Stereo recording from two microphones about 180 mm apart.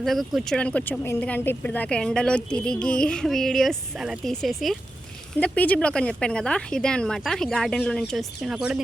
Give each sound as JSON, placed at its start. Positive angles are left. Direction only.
{"t": 0.0, "sound": "speech", "side_deg": 0}